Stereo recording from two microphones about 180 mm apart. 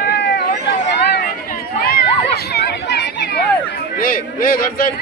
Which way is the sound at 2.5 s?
65° left (ahead or behind).